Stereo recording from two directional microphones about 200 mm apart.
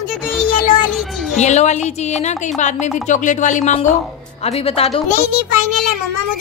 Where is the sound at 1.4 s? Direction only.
35° left (ahead or behind).